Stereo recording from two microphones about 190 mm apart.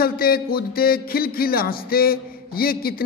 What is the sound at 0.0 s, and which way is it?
A man's voice, 50° left (ahead or behind).